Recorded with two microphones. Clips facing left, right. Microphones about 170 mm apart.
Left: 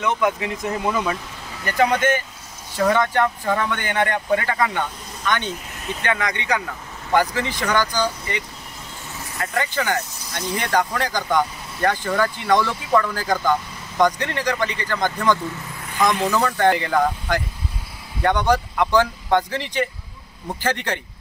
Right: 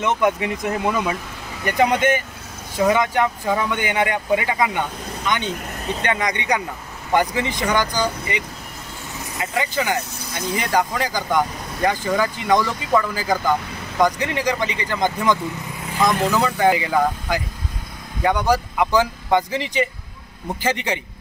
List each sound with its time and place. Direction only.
0.0 s speech: 20° right (ahead or behind)